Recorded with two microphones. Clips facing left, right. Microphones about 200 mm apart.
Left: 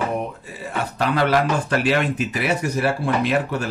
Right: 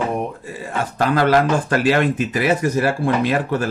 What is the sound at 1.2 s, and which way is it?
Speech, 45° right (ahead or behind).